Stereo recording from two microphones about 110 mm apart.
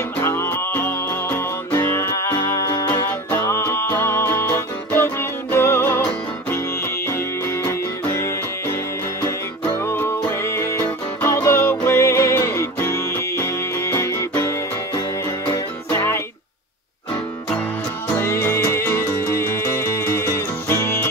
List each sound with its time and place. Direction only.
0.2 s music: 25° left (ahead or behind)
9.8 s music: 20° left (ahead or behind)
15.4 s music: 40° left (ahead or behind)
18.1 s music: 25° left (ahead or behind)